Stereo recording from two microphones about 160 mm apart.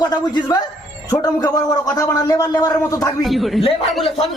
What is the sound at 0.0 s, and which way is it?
Speech, 25° left (ahead or behind).